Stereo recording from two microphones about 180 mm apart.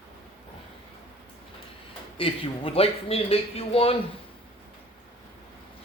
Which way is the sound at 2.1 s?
30° left (ahead or behind).